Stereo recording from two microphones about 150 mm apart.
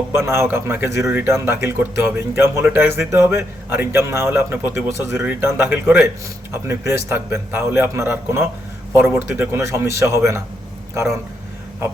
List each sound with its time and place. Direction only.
0.1 s a man's voice: 15° right (ahead or behind)